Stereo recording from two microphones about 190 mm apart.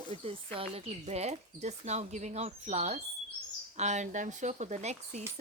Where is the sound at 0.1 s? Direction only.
30° right (ahead or behind).